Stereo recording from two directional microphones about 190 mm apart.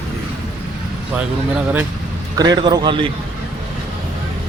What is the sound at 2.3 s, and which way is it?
Speech, 20° right (ahead or behind).